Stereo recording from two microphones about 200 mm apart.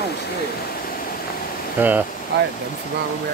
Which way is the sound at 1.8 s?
10° right (ahead or behind).